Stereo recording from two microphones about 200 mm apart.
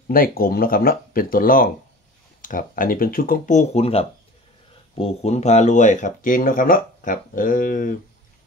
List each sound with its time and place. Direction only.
0.1 s speech: 45° left (ahead or behind)